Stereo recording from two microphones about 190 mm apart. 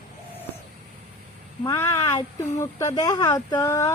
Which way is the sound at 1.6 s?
15° left (ahead or behind).